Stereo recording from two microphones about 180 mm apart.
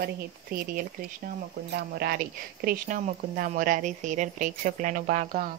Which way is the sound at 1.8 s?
60° right (ahead or behind).